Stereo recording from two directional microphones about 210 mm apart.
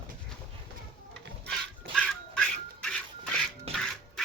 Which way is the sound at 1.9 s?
5° left (ahead or behind).